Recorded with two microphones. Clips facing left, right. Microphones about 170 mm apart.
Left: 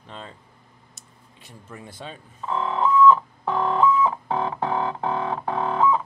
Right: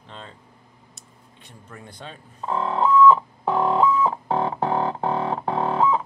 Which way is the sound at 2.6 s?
35° right (ahead or behind).